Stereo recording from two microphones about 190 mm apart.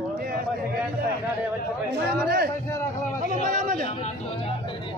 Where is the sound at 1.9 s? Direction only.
55° right (ahead or behind).